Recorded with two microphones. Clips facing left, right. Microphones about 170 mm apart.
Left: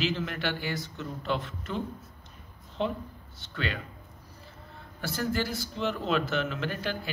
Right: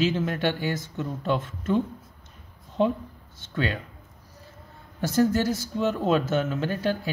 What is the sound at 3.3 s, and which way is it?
Speech, 50° right (ahead or behind).